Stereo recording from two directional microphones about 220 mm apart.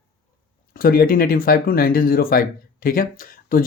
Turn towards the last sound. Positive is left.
turn(degrees=40)  # may be behind; listen again after turning